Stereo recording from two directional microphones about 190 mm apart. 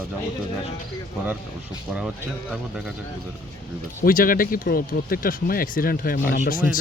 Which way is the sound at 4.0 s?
50° left (ahead or behind).